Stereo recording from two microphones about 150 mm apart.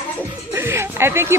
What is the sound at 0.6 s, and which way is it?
Speech, 15° right (ahead or behind).